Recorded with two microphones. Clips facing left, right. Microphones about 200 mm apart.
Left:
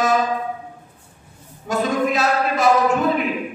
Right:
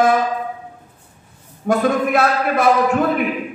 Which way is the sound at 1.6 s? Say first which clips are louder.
Right 3 dB; 55° right (ahead or behind).